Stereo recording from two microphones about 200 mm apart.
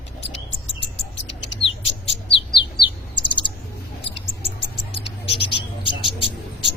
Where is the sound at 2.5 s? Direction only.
25° left (ahead or behind).